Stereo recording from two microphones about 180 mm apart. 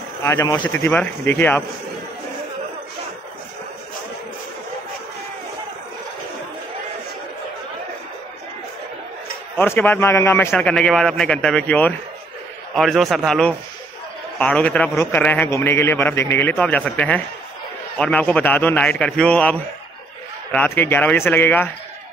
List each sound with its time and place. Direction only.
0.2 s a man's voice: 15° left (ahead or behind)
9.6 s a man's voice: 10° left (ahead or behind)
20.5 s a man's voice: 10° left (ahead or behind)